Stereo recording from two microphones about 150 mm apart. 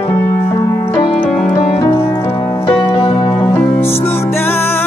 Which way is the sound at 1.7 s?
25° left (ahead or behind).